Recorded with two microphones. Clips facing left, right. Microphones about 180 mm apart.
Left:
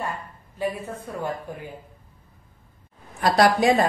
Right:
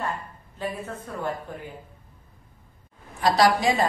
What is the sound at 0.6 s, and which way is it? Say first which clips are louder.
Speech: left 4 dB; 10° left (ahead or behind).